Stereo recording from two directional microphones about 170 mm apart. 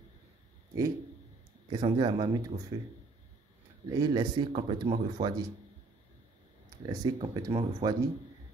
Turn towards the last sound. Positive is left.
turn(degrees=-30)  # may be behind; listen again after turning